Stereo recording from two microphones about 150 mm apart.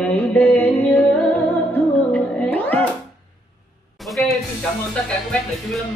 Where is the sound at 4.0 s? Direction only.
Centre (ahead or behind).